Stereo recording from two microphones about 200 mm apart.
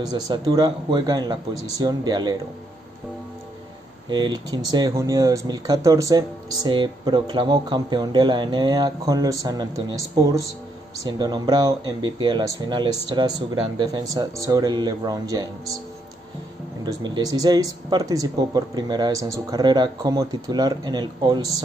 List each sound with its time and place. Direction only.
0.0 s speech: 20° right (ahead or behind)
4.1 s speech: 20° right (ahead or behind)
16.8 s speech: 20° right (ahead or behind)